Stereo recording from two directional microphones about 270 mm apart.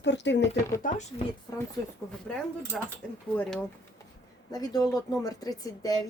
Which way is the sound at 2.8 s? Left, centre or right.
Centre.